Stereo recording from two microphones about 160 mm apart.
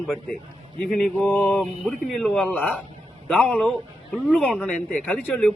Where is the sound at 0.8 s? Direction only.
5° left (ahead or behind).